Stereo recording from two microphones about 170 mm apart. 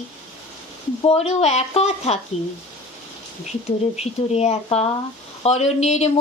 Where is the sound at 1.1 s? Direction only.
40° left (ahead or behind).